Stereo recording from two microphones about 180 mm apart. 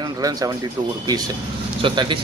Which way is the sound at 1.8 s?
25° right (ahead or behind).